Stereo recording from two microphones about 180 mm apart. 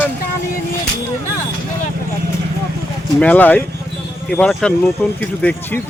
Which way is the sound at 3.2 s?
10° left (ahead or behind).